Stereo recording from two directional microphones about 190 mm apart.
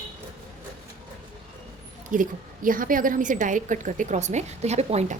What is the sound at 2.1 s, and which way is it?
A woman's voice, 45° right (ahead or behind).